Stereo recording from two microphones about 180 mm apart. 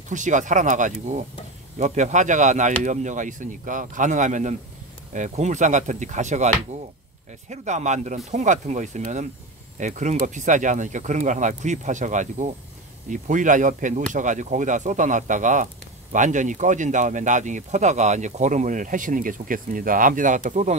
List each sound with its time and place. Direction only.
0.1 s speech: 45° right (ahead or behind)